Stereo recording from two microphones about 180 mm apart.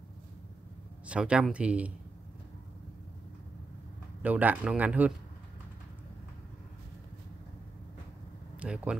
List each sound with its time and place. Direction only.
1.0 s speech: 5° right (ahead or behind)
4.2 s speech: 10° right (ahead or behind)
8.5 s speech: 5° right (ahead or behind)